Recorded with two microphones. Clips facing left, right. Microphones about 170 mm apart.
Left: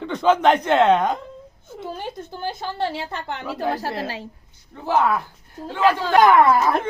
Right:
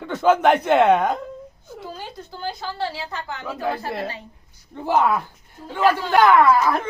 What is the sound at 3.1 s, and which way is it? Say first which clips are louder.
Speech: left 2 dB; 60° left (ahead or behind).